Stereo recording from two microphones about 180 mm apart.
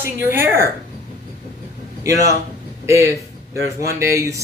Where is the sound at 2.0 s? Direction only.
15° right (ahead or behind).